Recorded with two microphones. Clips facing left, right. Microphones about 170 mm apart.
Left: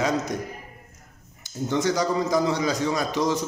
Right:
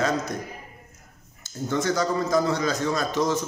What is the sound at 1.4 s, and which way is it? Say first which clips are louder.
A man's voice: left 2 dB; 15° left (ahead or behind).